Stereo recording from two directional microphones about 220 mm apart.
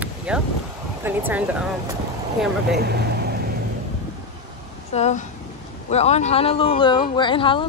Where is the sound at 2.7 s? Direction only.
45° right (ahead or behind).